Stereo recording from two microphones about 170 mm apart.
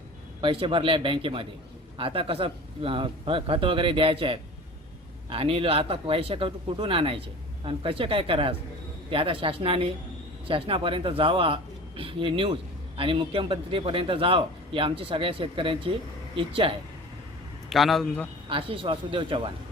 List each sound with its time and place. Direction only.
0.4 s a man's voice: 30° right (ahead or behind)
17.7 s a man's voice: centre (ahead or behind)
18.4 s a man's voice: 30° right (ahead or behind)